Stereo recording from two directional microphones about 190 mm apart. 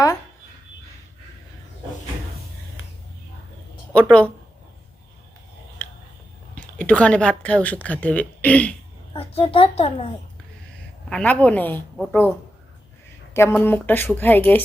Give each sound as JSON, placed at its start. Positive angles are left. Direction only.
{"t": 3.9, "sound": "a woman's voice", "side_deg": 5}
{"t": 5.8, "sound": "a sound", "side_deg": 5}
{"t": 6.6, "sound": "a woman's voice", "side_deg": 5}
{"t": 9.1, "sound": "a child's voice", "side_deg": 30}
{"t": 11.1, "sound": "a woman's voice", "side_deg": 5}
{"t": 13.3, "sound": "a woman's voice", "side_deg": 10}